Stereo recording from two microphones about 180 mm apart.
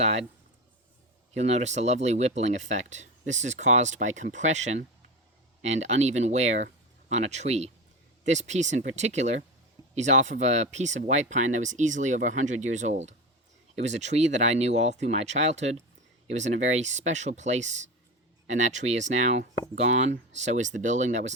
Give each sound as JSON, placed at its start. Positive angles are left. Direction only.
{"t": 0.0, "sound": "speech", "side_deg": -35}
{"t": 1.3, "sound": "speech", "side_deg": -35}